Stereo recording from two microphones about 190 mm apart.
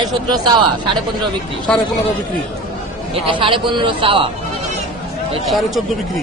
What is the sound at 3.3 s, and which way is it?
Speech, 25° right (ahead or behind).